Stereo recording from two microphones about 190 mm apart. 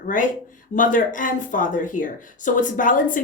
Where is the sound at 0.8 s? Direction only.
45° left (ahead or behind).